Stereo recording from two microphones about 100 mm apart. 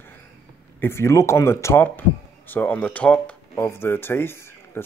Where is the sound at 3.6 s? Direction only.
25° left (ahead or behind).